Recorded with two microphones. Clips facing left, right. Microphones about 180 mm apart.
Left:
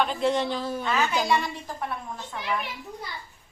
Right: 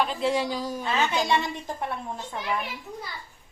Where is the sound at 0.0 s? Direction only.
Centre (ahead or behind).